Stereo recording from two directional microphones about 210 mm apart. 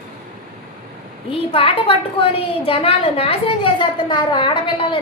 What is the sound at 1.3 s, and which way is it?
A woman's voice, 25° left (ahead or behind).